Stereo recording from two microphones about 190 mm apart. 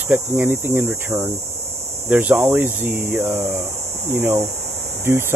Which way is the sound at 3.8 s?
35° right (ahead or behind).